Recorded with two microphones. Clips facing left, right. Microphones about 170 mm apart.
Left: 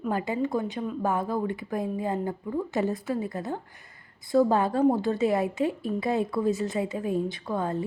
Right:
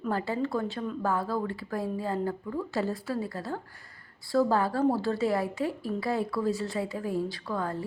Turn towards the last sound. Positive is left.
turn(degrees=20)  # may be behind; listen again after turning